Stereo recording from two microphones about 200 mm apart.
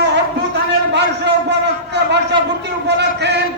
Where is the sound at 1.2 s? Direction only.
60° right (ahead or behind).